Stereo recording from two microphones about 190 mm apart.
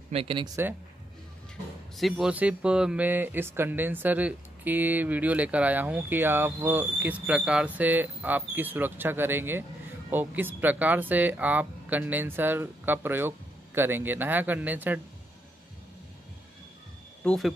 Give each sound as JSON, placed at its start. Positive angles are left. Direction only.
{"t": 0.1, "sound": "speech", "side_deg": -30}
{"t": 2.0, "sound": "speech", "side_deg": 0}
{"t": 17.2, "sound": "speech", "side_deg": 5}